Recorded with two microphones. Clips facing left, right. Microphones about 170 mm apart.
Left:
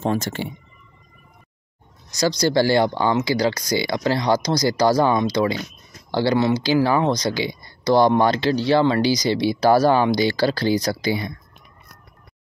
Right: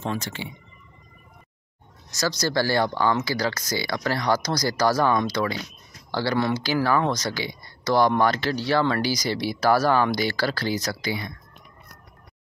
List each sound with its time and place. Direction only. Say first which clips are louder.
0.0 s speech: left 7 dB; 45° left (ahead or behind)
2.5 s speech: left 4 dB; 20° left (ahead or behind)